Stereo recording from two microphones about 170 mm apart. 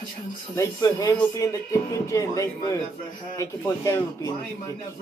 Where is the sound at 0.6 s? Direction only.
20° left (ahead or behind).